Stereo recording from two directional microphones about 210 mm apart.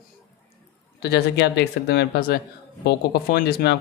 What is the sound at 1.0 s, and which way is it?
Speech, 50° left (ahead or behind).